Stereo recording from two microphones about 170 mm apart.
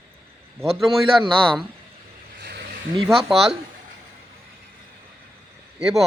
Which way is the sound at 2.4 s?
70° right (ahead or behind).